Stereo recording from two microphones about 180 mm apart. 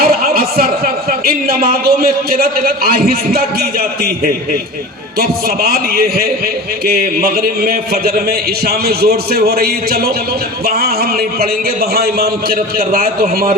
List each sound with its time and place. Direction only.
0.0 s a sound: 55° right (ahead or behind)
1.2 s a man's voice: 55° right (ahead or behind)
5.2 s a man's voice: 55° right (ahead or behind)
11.9 s a man's voice: 55° right (ahead or behind)